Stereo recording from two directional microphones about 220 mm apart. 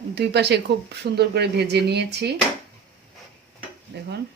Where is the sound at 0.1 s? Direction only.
50° right (ahead or behind).